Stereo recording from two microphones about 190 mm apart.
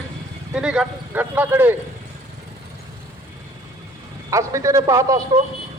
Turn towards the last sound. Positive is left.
turn(degrees=-15)  # may be behind; listen again after turning